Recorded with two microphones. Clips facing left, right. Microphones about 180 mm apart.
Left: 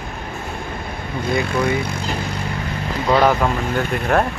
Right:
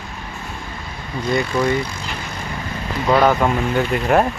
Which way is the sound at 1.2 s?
55° left (ahead or behind).